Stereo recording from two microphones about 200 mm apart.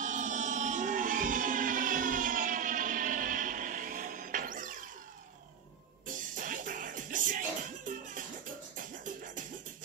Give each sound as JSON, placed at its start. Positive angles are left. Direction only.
{"t": 0.0, "sound": "music", "side_deg": -40}
{"t": 6.0, "sound": "music", "side_deg": -40}